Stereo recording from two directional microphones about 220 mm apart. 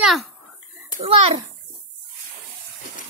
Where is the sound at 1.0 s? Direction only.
25° right (ahead or behind).